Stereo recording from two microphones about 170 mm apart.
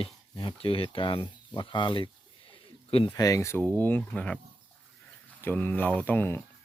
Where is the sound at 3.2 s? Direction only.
20° left (ahead or behind).